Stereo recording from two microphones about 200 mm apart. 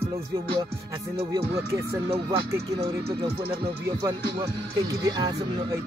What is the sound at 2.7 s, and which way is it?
Speech, 55° right (ahead or behind).